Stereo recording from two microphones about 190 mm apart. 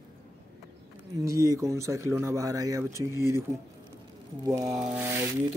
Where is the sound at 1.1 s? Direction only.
15° right (ahead or behind).